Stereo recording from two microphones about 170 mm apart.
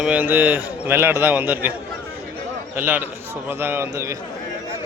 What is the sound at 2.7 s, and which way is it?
A man's voice, 10° right (ahead or behind).